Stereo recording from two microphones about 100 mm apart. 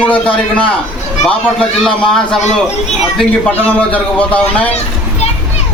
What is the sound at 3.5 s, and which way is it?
Speech, 15° left (ahead or behind).